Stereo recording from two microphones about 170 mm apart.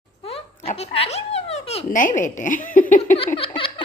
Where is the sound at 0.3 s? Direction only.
35° left (ahead or behind).